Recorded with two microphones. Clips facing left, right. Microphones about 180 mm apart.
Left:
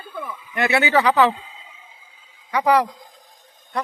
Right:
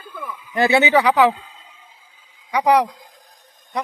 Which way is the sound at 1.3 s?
Centre (ahead or behind).